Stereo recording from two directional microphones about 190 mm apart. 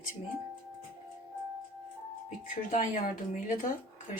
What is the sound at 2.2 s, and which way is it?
Speech, 40° left (ahead or behind).